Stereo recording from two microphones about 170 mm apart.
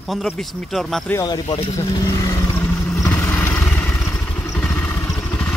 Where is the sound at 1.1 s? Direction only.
20° left (ahead or behind).